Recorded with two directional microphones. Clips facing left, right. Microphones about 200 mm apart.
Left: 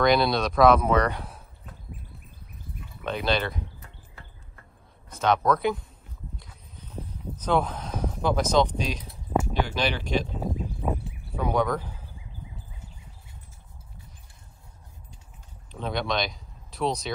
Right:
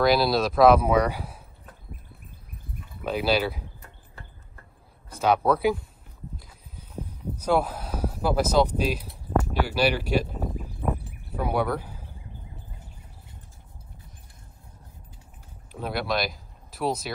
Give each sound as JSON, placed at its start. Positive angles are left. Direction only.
{"t": 0.0, "sound": "speech", "side_deg": -5}
{"t": 2.3, "sound": "a sound", "side_deg": -55}
{"t": 3.0, "sound": "speech", "side_deg": -5}
{"t": 5.2, "sound": "speech", "side_deg": -10}
{"t": 6.3, "sound": "a sound", "side_deg": -5}
{"t": 9.5, "sound": "speech", "side_deg": -5}
{"t": 10.8, "sound": "a sound", "side_deg": 5}
{"t": 11.3, "sound": "speech", "side_deg": -10}
{"t": 15.7, "sound": "speech", "side_deg": -5}